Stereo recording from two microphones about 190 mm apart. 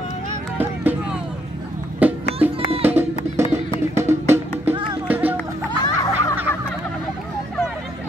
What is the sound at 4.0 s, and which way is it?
Music, 15° right (ahead or behind).